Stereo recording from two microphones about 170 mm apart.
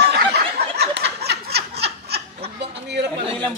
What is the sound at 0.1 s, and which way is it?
Snicker, 75° right (ahead or behind).